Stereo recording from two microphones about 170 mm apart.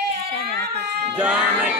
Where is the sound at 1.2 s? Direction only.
10° right (ahead or behind).